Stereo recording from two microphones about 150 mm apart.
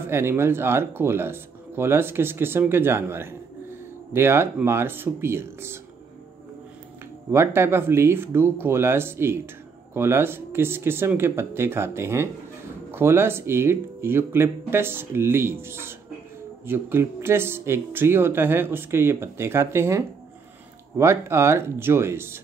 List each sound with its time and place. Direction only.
0.0 s speech: 15° right (ahead or behind)
7.2 s speech: 15° right (ahead or behind)
21.0 s speech: 20° right (ahead or behind)